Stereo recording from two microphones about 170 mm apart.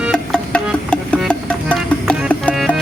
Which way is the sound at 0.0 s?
5° left (ahead or behind).